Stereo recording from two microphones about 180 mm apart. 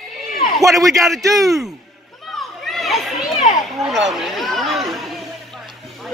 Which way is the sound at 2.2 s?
Centre (ahead or behind).